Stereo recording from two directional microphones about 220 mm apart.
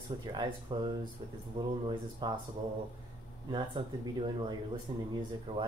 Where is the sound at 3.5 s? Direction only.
20° right (ahead or behind).